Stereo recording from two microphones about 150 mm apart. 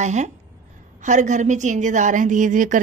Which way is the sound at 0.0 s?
50° right (ahead or behind).